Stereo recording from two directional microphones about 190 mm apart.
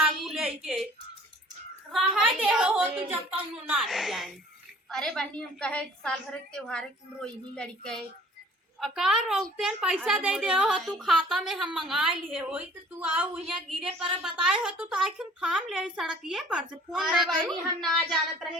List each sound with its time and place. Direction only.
0.0 s a sound: centre (ahead or behind)
1.9 s a woman's voice: 5° right (ahead or behind)
13.8 s a woman's voice: 25° right (ahead or behind)
14.4 s a woman's voice: centre (ahead or behind)